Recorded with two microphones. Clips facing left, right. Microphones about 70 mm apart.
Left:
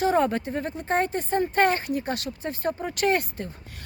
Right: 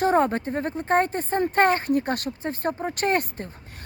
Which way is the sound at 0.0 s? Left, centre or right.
Right.